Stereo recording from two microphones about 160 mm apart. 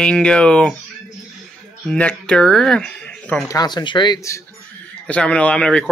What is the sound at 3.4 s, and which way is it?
Speech, 25° left (ahead or behind).